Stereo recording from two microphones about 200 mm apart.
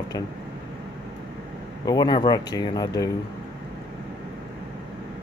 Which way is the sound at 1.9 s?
20° left (ahead or behind).